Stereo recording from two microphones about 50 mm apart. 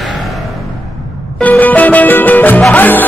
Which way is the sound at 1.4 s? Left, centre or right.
Left.